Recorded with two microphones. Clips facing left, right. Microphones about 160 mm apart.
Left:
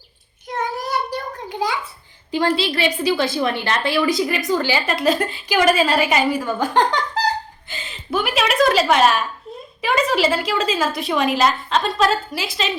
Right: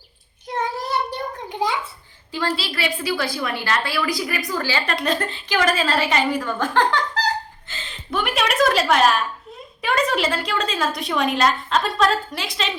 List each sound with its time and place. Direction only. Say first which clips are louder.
0.4 s a sound: left 1 dB; 25° right (ahead or behind)
2.6 s a woman's voice: left 5 dB; 25° left (ahead or behind)
4.9 s a woman's voice: left 4 dB; 5° left (ahead or behind)